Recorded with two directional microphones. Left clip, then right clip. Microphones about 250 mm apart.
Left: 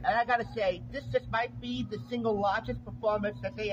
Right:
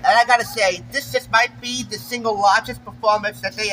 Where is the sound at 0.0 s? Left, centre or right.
Centre.